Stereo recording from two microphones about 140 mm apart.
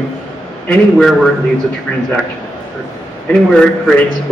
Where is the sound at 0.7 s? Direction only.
5° left (ahead or behind).